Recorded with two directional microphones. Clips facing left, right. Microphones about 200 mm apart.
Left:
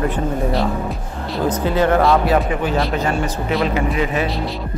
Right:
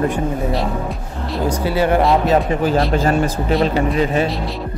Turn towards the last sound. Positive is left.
turn(degrees=-30)  # may be behind; listen again after turning